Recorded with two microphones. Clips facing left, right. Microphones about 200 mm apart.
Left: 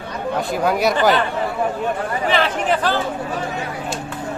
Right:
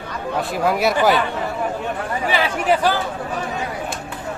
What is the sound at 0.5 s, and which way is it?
Speech, centre (ahead or behind).